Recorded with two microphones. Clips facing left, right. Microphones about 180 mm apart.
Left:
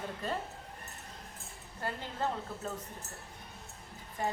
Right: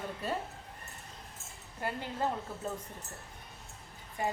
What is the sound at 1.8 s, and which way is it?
Speech, 10° right (ahead or behind).